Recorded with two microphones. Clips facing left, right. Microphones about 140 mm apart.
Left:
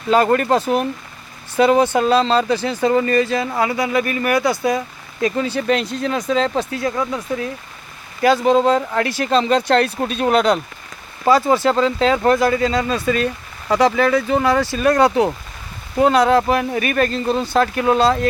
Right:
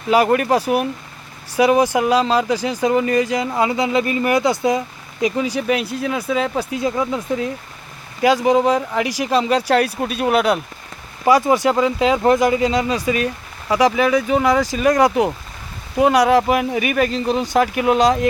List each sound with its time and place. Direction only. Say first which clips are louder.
0.1 s speech: even; 10° right (ahead or behind)
8.2 s speech: left 1 dB; 15° right (ahead or behind)